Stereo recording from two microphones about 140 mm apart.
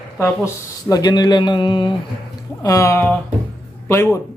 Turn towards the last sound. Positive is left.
turn(degrees=20)  # may be behind; listen again after turning